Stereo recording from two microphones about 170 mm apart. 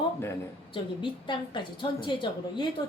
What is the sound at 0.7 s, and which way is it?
A woman's voice, 30° left (ahead or behind).